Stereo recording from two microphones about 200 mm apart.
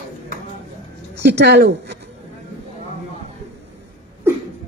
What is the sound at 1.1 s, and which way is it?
Speech, 55° right (ahead or behind).